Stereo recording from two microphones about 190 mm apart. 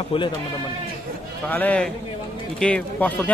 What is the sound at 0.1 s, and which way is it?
Speech, 25° left (ahead or behind).